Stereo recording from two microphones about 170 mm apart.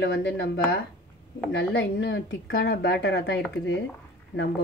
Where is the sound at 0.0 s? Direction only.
85° left.